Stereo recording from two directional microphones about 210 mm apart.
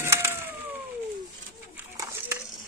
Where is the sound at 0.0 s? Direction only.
10° right (ahead or behind).